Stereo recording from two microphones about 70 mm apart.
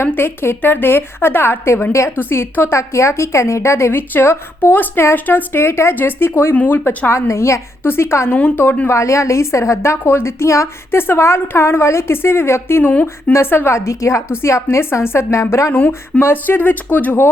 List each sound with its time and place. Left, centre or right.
0.0 s a woman's voice: left
8.3 s speech: left
8.9 s a woman's voice: left
12.9 s speech: left
13.3 s a woman's voice: left
15.7 s speech: left